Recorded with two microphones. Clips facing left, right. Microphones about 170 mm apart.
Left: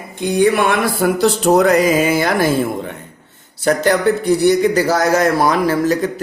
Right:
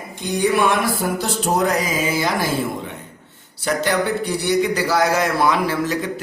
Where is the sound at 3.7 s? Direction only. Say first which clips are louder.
Left 6 dB; 45° left (ahead or behind).